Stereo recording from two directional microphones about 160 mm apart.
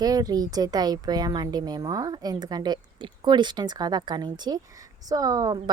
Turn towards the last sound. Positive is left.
turn(degrees=-25)  # may be behind; listen again after turning